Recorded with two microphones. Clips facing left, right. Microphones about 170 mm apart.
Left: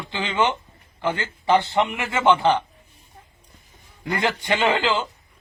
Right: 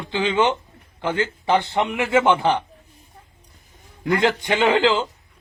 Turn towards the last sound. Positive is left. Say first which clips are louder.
# right 3 dB
turn(degrees=-20)  # may be behind; listen again after turning